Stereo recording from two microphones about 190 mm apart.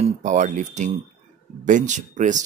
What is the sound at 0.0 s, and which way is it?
Speech, 40° right (ahead or behind).